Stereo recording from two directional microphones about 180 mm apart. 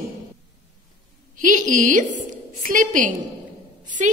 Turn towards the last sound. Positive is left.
turn(degrees=-45)  # may be behind; listen again after turning